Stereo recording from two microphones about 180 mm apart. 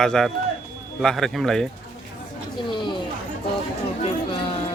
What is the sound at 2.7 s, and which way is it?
Speech, 25° left (ahead or behind).